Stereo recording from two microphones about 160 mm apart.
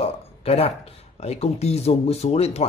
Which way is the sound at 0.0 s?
40° left (ahead or behind).